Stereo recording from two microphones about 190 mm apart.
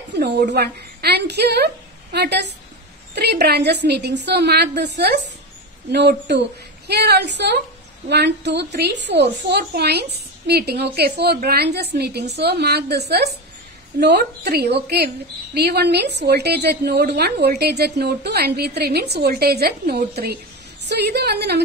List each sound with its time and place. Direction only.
0.2 s a woman's voice: 60° right (ahead or behind)